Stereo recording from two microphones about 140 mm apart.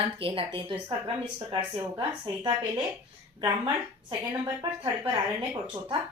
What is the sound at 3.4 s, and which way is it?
Speech, 35° right (ahead or behind).